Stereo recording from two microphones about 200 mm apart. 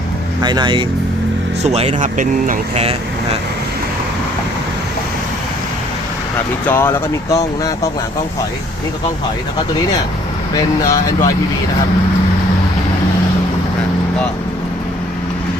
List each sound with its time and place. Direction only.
0.4 s speech: 20° right (ahead or behind)
1.6 s speech: 35° right (ahead or behind)
6.7 s speech: 10° left (ahead or behind)
10.5 s speech: 15° left (ahead or behind)